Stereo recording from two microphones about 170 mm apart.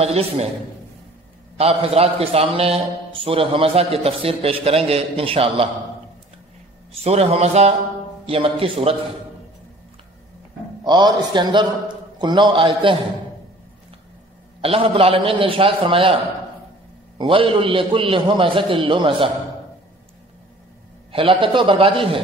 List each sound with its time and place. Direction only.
0.0 s a man's voice: 35° right (ahead or behind)
1.6 s a man's voice: 35° right (ahead or behind)
7.0 s a man's voice: 35° right (ahead or behind)
10.8 s a man's voice: 25° right (ahead or behind)
14.6 s a man's voice: 35° right (ahead or behind)
17.2 s a man's voice: 30° right (ahead or behind)
21.1 s a man's voice: 30° right (ahead or behind)